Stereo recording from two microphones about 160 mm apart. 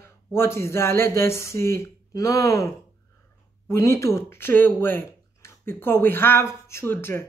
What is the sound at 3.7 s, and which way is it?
A woman's voice, 15° left (ahead or behind).